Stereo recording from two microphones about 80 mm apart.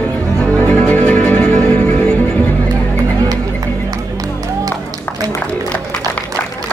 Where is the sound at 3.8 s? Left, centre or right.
Right.